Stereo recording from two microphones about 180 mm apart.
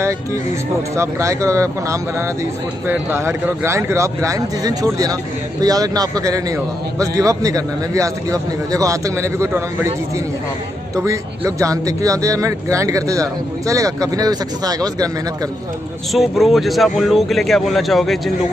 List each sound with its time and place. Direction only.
0.9 s speech: 15° right (ahead or behind)
11.0 s speech: 15° right (ahead or behind)
16.1 s speech: centre (ahead or behind)